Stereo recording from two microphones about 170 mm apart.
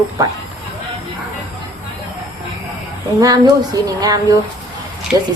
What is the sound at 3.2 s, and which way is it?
A woman's voice, 20° right (ahead or behind).